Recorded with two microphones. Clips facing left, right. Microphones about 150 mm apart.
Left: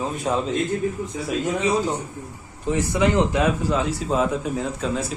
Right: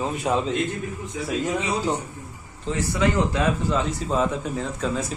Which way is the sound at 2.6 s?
15° left (ahead or behind).